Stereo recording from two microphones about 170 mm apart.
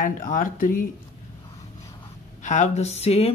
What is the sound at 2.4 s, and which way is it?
Speech, 45° left (ahead or behind).